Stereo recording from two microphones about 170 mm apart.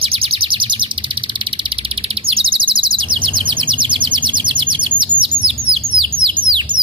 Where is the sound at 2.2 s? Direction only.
30° right (ahead or behind).